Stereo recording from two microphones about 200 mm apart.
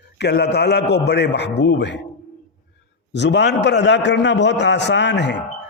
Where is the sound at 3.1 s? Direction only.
60° left (ahead or behind).